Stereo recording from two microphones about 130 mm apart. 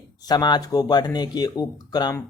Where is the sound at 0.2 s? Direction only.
30° left (ahead or behind).